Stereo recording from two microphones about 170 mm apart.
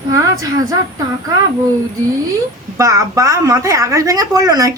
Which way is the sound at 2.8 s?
20° right (ahead or behind).